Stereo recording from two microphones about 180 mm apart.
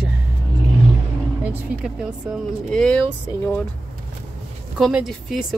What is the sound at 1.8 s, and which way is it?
Speech, 5° right (ahead or behind).